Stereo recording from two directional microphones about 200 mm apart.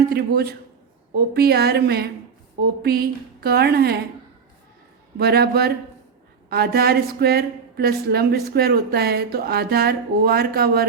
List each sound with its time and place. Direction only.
0.1 s a woman's voice: 50° right (ahead or behind)
5.1 s a woman's voice: 50° right (ahead or behind)